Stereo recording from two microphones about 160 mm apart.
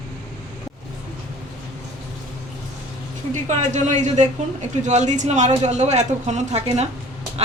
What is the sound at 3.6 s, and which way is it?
Speech, 50° right (ahead or behind).